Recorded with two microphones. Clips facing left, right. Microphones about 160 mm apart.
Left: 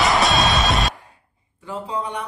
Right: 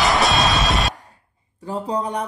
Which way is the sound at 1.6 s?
40° right (ahead or behind).